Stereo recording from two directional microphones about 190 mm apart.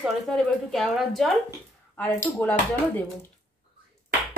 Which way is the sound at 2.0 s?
10° left (ahead or behind).